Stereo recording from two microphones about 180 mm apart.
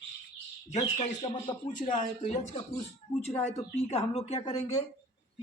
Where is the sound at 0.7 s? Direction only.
40° left (ahead or behind).